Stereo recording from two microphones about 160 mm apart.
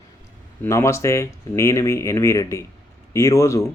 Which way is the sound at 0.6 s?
15° left (ahead or behind).